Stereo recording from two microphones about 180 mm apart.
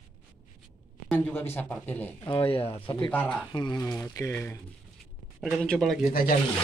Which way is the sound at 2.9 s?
10° left (ahead or behind).